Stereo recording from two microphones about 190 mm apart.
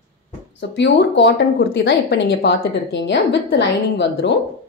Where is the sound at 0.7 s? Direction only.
65° left (ahead or behind).